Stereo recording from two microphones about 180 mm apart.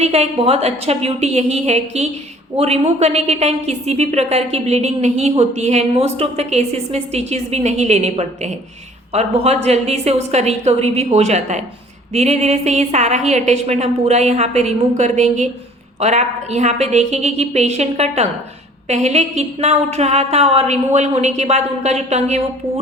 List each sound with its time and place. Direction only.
0.0 s a woman's voice: 35° right (ahead or behind)